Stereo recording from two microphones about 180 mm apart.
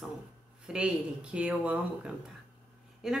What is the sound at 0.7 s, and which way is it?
A woman's voice, 5° right (ahead or behind).